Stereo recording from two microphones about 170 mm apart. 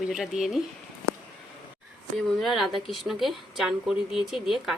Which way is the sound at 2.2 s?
Centre (ahead or behind).